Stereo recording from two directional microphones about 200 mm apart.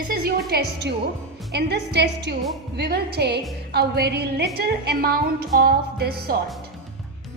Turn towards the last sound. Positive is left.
turn(degrees=-50)  # may be behind; listen again after turning